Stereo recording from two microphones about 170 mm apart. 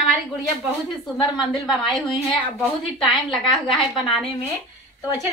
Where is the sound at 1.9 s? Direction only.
Centre (ahead or behind).